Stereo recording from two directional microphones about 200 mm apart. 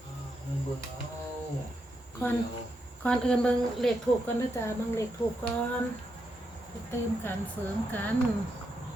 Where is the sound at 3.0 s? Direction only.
5° left (ahead or behind).